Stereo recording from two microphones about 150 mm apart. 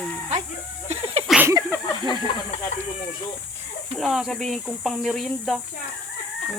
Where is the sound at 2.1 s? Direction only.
35° left (ahead or behind).